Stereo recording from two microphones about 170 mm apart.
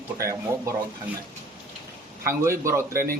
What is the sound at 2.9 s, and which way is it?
Speech, 60° right (ahead or behind).